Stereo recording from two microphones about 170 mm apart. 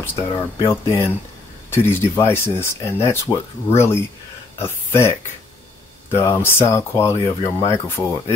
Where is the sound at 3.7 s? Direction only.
15° left (ahead or behind).